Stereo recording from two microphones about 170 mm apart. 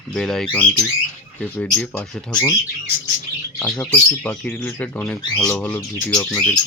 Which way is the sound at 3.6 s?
5° left (ahead or behind).